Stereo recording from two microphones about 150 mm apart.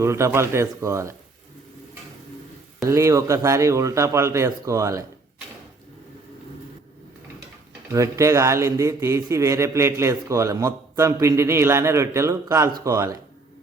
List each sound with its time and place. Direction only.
0.0 s a man's voice: 20° right (ahead or behind)
2.8 s a man's voice: 20° right (ahead or behind)
7.9 s a man's voice: 20° right (ahead or behind)